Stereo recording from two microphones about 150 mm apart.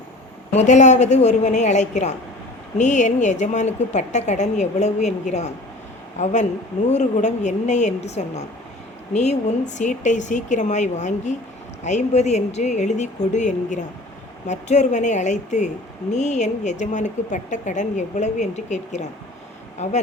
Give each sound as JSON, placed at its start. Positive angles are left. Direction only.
{"t": 0.5, "sound": "speech", "side_deg": 50}